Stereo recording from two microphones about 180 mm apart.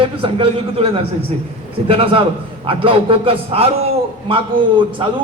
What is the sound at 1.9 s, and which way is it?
A man's voice, 30° right (ahead or behind).